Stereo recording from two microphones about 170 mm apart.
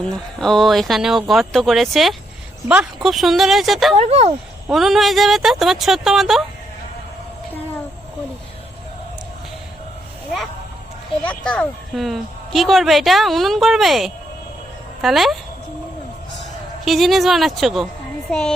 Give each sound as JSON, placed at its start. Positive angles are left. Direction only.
{"t": 0.0, "sound": "speech", "side_deg": 5}
{"t": 3.9, "sound": "speech", "side_deg": -40}
{"t": 4.7, "sound": "speech", "side_deg": 0}
{"t": 11.2, "sound": "speech", "side_deg": 5}
{"t": 16.8, "sound": "speech", "side_deg": 0}